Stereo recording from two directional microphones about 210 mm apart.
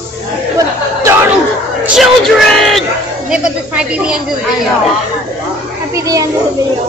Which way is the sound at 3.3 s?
5° right (ahead or behind).